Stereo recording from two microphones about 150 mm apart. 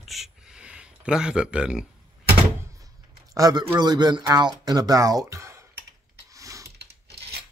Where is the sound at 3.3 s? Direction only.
25° right (ahead or behind).